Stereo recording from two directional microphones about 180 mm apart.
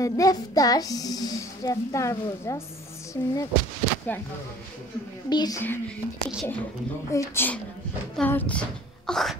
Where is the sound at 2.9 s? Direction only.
15° left (ahead or behind).